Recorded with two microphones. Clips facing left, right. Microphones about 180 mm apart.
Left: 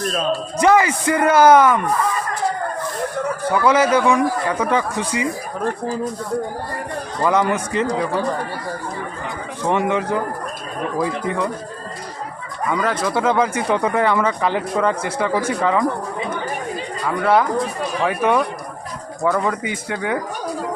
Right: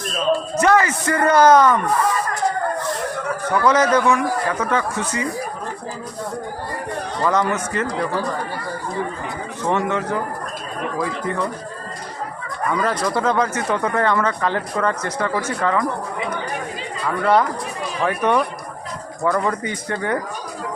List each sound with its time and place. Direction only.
0.5 s speech: 15° left (ahead or behind)
3.5 s speech: 10° left (ahead or behind)
7.3 s speech: 10° left (ahead or behind)
9.6 s speech: 10° left (ahead or behind)
12.8 s speech: 5° left (ahead or behind)
18.0 s speech: 5° left (ahead or behind)